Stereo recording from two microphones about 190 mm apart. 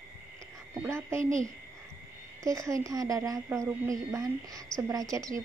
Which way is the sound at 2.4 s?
15° right (ahead or behind).